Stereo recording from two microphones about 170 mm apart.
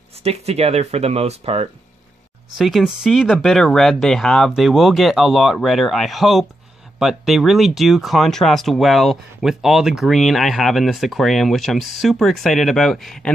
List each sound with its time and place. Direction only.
0.2 s speech: 40° right (ahead or behind)
2.5 s speech: centre (ahead or behind)